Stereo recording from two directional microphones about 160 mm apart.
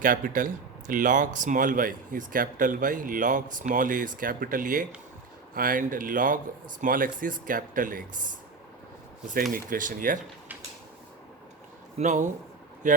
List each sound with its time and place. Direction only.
0.0 s speech: 60° right (ahead or behind)
9.5 s speech: 55° right (ahead or behind)
11.9 s speech: 50° right (ahead or behind)